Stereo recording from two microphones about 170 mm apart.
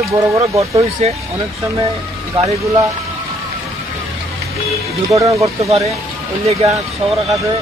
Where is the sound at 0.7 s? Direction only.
35° right (ahead or behind).